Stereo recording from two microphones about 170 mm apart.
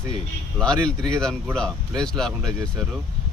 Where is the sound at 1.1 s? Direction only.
5° left (ahead or behind).